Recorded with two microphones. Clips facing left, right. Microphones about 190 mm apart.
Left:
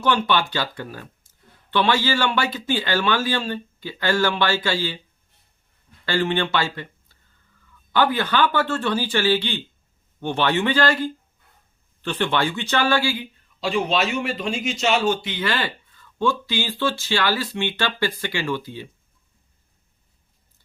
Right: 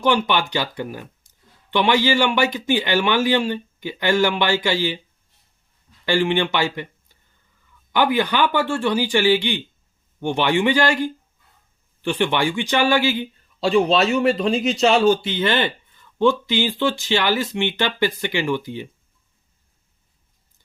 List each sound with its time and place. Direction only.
0.0 s speech: 15° right (ahead or behind)
6.1 s speech: 15° right (ahead or behind)
13.6 s a man's voice: 35° right (ahead or behind); by 18.9 s 15° right (ahead or behind)